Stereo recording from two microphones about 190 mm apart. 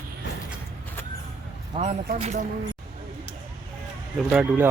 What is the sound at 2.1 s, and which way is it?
Speech, 35° right (ahead or behind).